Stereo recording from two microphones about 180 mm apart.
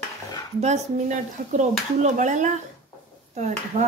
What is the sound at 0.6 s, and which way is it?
Speech, 40° right (ahead or behind).